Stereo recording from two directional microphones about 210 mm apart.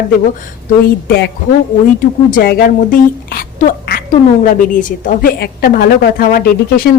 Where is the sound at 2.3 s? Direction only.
45° left (ahead or behind).